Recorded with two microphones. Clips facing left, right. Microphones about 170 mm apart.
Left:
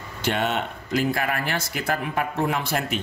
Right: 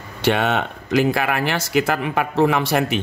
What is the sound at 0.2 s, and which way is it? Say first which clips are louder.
Speech: right 6 dB; 75° right (ahead or behind).